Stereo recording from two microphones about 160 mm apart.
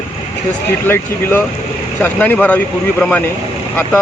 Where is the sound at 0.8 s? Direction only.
15° left (ahead or behind).